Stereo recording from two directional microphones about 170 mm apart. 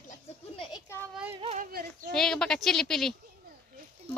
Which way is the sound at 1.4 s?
40° right (ahead or behind).